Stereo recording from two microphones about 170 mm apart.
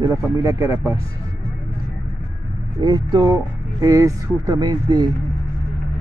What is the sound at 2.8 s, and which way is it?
Speech, 25° right (ahead or behind).